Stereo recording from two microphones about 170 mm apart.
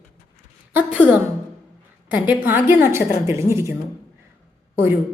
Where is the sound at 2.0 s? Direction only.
10° right (ahead or behind).